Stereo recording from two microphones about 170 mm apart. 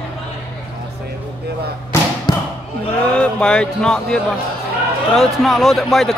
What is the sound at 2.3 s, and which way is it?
Basketball bounce, 25° left (ahead or behind).